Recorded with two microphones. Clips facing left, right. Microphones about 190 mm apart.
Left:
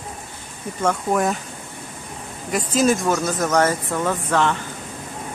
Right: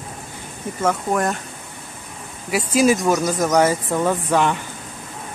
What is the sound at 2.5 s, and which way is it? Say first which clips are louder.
Speech: right 2 dB; 10° right (ahead or behind).